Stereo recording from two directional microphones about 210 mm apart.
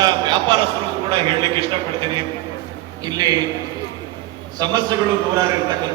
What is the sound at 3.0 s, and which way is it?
Speech, 20° right (ahead or behind).